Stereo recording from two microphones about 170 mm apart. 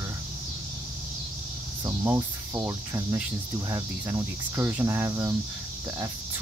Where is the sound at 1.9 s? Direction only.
15° right (ahead or behind).